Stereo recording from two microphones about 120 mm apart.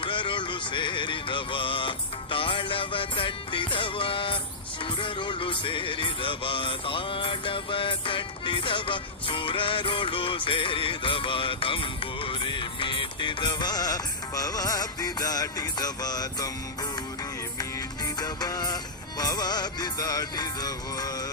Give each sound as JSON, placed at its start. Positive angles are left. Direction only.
{"t": 0.0, "sound": "music", "side_deg": 45}
{"t": 18.2, "sound": "music", "side_deg": 35}